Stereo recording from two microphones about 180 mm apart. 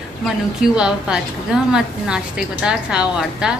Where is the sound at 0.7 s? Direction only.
5° right (ahead or behind).